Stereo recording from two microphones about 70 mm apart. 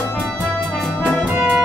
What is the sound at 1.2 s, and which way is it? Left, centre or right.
Music, centre.